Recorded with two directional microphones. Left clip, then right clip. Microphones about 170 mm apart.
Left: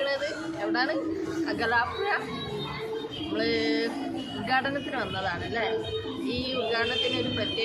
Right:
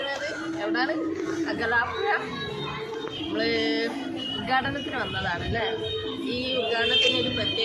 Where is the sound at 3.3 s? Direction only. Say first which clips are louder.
Right 1 dB; 10° left (ahead or behind).